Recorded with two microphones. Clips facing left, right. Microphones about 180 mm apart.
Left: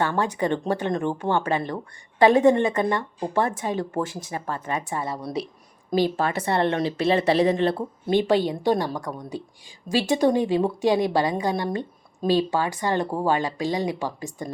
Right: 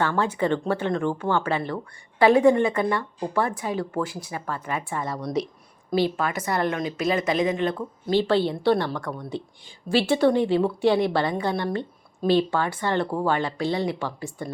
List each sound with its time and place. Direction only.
0.0 s a woman's voice: 15° left (ahead or behind); by 8.1 s 35° left (ahead or behind)
8.1 s a woman's voice: 15° left (ahead or behind)